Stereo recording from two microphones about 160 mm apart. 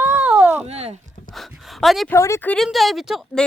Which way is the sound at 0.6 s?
40° right (ahead or behind).